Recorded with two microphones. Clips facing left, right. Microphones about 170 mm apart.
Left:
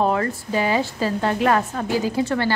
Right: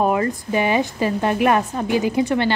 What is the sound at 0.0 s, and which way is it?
A woman's voice, 15° right (ahead or behind).